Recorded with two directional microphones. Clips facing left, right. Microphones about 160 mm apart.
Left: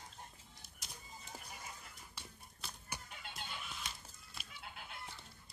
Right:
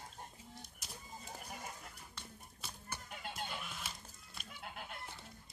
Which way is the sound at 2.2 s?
10° left (ahead or behind).